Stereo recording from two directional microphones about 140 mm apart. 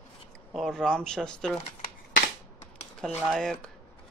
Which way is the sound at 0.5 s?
Centre (ahead or behind).